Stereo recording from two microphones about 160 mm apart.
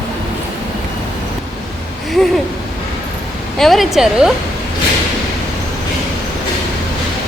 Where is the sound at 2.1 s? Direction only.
Centre (ahead or behind).